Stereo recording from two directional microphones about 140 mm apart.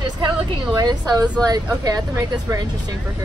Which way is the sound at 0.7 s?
30° right (ahead or behind).